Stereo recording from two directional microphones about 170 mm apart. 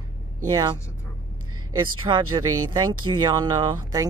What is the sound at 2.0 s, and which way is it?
Speech, 25° right (ahead or behind).